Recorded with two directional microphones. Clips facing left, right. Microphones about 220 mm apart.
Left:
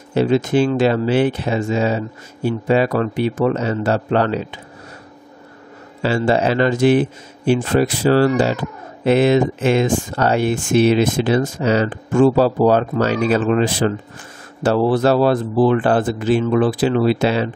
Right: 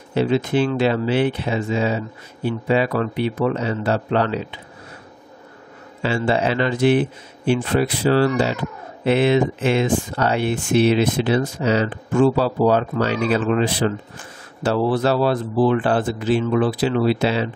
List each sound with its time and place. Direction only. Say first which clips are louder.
0.1 s speech: left 3 dB; 45° left (ahead or behind)
6.0 s speech: left 3 dB; 40° left (ahead or behind)